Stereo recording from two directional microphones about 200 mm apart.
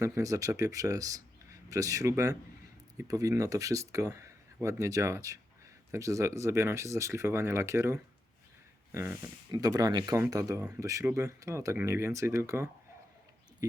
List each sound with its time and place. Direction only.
0.0 s speech: 15° right (ahead or behind)